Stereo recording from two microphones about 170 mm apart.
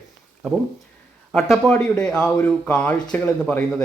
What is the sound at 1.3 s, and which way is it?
A man's voice, centre (ahead or behind).